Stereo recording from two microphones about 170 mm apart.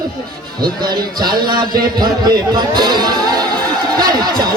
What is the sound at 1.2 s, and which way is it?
A man's voice, 25° right (ahead or behind).